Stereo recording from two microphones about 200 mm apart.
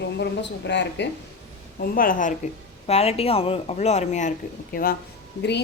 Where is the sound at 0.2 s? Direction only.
60° left (ahead or behind).